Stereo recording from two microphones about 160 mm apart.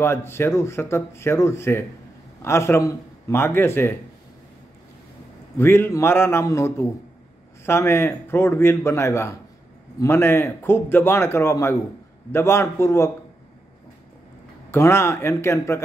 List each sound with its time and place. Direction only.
0.0 s a man's voice: 15° left (ahead or behind)
5.6 s a man's voice: 15° left (ahead or behind)
14.7 s a man's voice: 15° left (ahead or behind)